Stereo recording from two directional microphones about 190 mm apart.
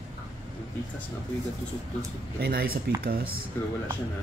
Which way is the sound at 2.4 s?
55° right (ahead or behind).